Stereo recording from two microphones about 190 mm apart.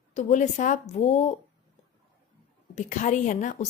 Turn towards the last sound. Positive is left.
turn(degrees=40)  # may be behind; listen again after turning